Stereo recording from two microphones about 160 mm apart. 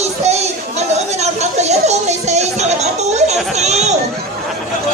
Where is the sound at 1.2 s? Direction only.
45° right (ahead or behind).